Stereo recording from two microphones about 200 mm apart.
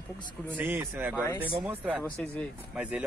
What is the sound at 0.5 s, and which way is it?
A man's voice, 10° right (ahead or behind).